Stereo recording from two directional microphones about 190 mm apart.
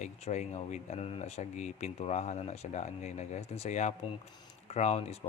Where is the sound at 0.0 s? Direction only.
35° left (ahead or behind).